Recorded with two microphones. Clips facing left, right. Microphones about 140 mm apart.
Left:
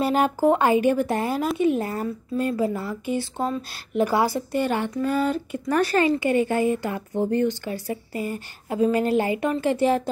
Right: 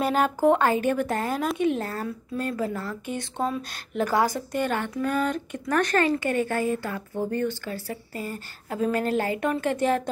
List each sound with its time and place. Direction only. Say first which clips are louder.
0.0 s speech: left 2 dB; 10° left (ahead or behind)